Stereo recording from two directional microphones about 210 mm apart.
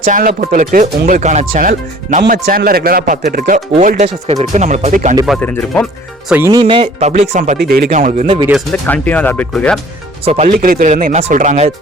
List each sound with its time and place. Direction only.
0.0 s speech: 40° right (ahead or behind)
3.7 s speech: 30° right (ahead or behind)
5.2 s speech: 5° left (ahead or behind)
6.3 s speech: 15° right (ahead or behind)
7.1 s speech: 35° right (ahead or behind)
7.6 s speech: 45° right (ahead or behind)
8.4 s speech: centre (ahead or behind)
10.2 s speech: 30° right (ahead or behind)
10.5 s speech: 45° right (ahead or behind)